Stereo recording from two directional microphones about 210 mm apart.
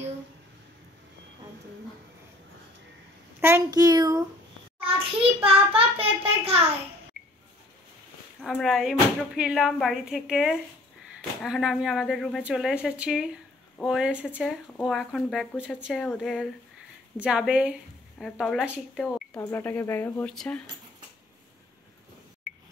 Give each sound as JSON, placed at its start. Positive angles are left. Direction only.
{"t": 3.3, "sound": "a child's voice", "side_deg": -10}
{"t": 8.4, "sound": "speech", "side_deg": 0}